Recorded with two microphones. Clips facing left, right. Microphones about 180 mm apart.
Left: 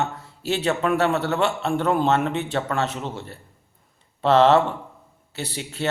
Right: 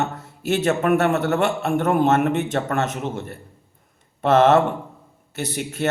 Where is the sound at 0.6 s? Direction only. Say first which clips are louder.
Right 3 dB; 45° right (ahead or behind).